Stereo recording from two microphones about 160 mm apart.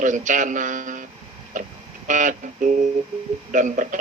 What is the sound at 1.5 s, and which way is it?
Music, 50° right (ahead or behind).